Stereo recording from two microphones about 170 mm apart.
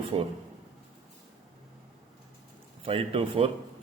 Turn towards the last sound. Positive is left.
turn(degrees=-30)  # may be behind; listen again after turning